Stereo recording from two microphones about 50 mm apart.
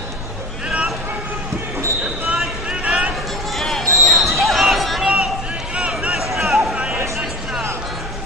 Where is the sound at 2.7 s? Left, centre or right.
Right.